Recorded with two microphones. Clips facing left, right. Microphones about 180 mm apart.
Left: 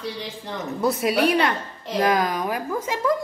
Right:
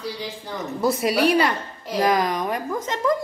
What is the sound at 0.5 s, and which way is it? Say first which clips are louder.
A woman's voice: right 1 dB; centre (ahead or behind).